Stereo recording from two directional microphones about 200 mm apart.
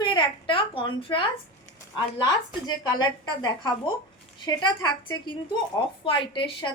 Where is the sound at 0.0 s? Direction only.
25° left (ahead or behind).